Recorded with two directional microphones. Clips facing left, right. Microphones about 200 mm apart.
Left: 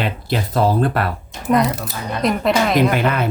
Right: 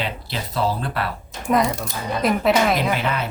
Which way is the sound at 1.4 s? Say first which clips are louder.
Left 3 dB; centre (ahead or behind).